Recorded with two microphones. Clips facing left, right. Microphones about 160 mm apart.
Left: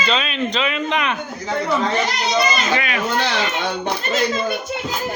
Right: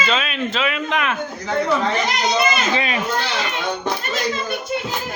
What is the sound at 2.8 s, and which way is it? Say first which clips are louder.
Speech: right 1 dB; 25° right (ahead or behind).